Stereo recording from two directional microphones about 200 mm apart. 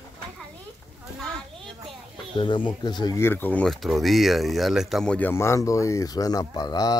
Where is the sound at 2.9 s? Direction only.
20° left (ahead or behind).